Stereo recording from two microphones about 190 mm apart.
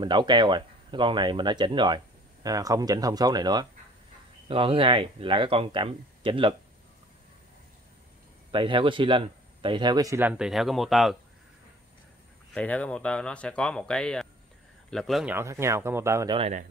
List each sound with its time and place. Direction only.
0.0 s speech: 25° right (ahead or behind)
8.5 s speech: 25° right (ahead or behind); by 11.1 s centre (ahead or behind)
12.5 s speech: 5° left (ahead or behind)
15.3 s speech: 15° right (ahead or behind)
16.3 s speech: 35° right (ahead or behind)